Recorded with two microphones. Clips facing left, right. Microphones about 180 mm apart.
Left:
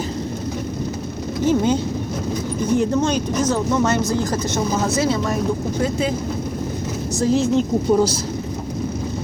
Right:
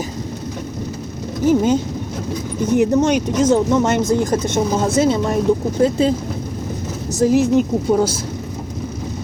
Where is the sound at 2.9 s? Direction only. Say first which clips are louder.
Right 4 dB; 20° right (ahead or behind).